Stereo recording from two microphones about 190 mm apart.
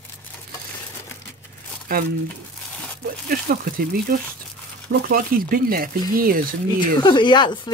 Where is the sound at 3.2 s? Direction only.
50° right (ahead or behind).